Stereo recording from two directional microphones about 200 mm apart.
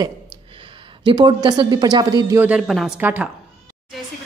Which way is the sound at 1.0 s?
20° right (ahead or behind).